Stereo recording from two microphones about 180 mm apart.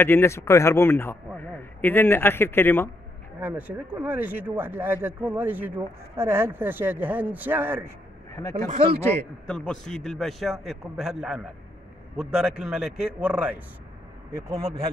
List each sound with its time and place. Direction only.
0.0 s a man's voice: 10° left (ahead or behind)
3.3 s speech: 10° right (ahead or behind)
8.5 s speech: 35° right (ahead or behind)
9.5 s a man's voice: 5° left (ahead or behind)